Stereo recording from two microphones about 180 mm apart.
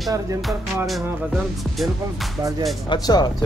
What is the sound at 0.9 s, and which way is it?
Speech, centre (ahead or behind).